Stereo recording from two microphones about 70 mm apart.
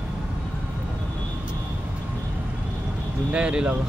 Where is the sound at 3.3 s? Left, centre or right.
Centre.